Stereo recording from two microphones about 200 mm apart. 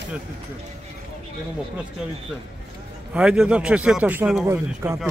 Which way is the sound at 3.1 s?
5° right (ahead or behind).